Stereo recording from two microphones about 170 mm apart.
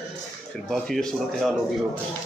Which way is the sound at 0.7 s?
5° left (ahead or behind).